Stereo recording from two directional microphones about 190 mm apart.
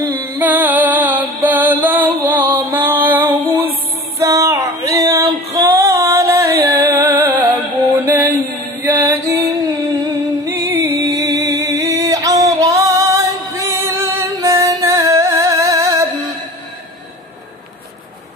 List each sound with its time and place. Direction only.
0.1 s music: 10° right (ahead or behind)
4.2 s a sound: 15° right (ahead or behind)
7.2 s music: 10° right (ahead or behind)